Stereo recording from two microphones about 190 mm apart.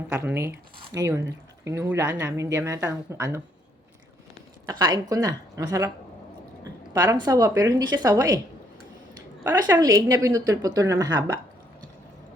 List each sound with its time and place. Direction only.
0.1 s a woman's voice: 10° right (ahead or behind)
4.6 s speech: 20° right (ahead or behind)
6.9 s speech: 20° right (ahead or behind)
9.4 s a woman's voice: 15° right (ahead or behind)